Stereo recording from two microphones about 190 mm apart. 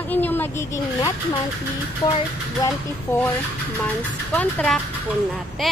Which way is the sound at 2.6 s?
15° left (ahead or behind).